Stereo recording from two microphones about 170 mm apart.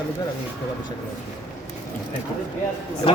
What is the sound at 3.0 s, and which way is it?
Speech, 30° left (ahead or behind).